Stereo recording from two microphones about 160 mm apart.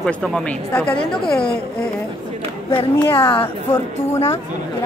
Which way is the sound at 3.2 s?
35° left (ahead or behind).